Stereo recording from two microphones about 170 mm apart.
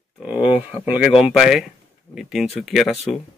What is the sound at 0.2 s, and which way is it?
Speech, 10° right (ahead or behind).